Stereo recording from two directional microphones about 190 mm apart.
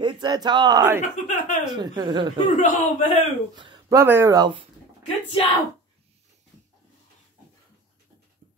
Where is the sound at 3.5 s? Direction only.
20° right (ahead or behind).